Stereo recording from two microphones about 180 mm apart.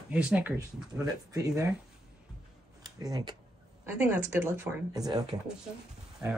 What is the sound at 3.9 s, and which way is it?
Speech, 10° right (ahead or behind).